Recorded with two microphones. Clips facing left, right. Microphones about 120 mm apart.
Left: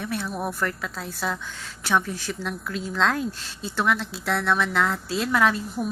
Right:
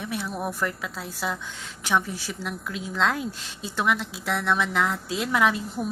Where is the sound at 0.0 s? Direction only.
15° right (ahead or behind).